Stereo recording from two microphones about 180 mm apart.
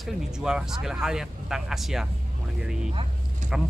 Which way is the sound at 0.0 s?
5° right (ahead or behind).